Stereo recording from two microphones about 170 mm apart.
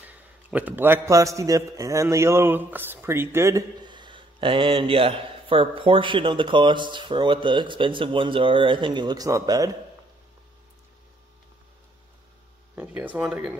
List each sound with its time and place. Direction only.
0.0 s a man's voice: 10° right (ahead or behind)
12.7 s speech: 10° right (ahead or behind)